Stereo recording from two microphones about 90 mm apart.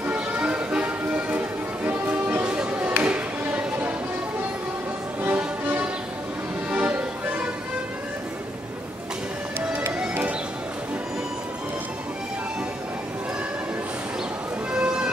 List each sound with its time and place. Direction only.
0.0 s music: 15° right (ahead or behind)
5.2 s music: 20° right (ahead or behind)
9.6 s music: 15° right (ahead or behind)
14.7 s music: 10° right (ahead or behind)